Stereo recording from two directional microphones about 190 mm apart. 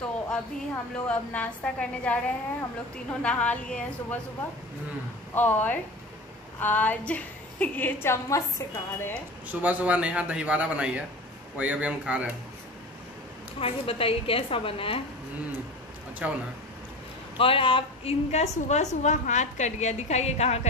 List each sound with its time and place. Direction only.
1.0 s a woman's voice: 5° left (ahead or behind)
5.3 s a woman's voice: 10° left (ahead or behind)
9.5 s a man's voice: 10° right (ahead or behind)
13.6 s a woman's voice: 30° left (ahead or behind)
16.2 s a man's voice: 5° right (ahead or behind)
17.4 s a woman's voice: 30° left (ahead or behind)